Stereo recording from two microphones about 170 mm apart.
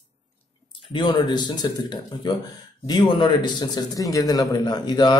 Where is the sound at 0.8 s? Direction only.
30° left (ahead or behind).